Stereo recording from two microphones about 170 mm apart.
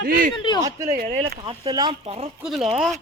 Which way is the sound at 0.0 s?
55° right (ahead or behind).